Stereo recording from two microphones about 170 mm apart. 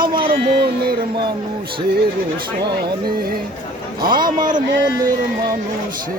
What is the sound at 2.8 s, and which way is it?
Speech, 60° right (ahead or behind).